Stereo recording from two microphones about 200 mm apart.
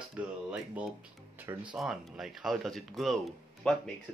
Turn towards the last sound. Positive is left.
turn(degrees=0)  # may be behind; listen again after turning